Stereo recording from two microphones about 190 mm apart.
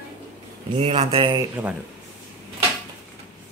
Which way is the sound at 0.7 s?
30° right (ahead or behind).